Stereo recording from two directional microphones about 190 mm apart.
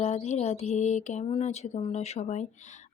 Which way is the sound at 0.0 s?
35° left (ahead or behind).